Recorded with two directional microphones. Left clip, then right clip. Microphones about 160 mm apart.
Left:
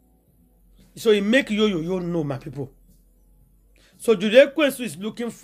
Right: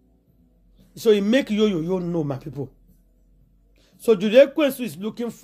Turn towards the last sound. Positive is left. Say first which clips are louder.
# right 1 dB
turn(degrees=-35)  # may be behind; listen again after turning